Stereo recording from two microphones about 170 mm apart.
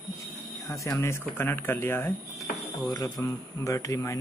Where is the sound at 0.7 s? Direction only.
20° left (ahead or behind).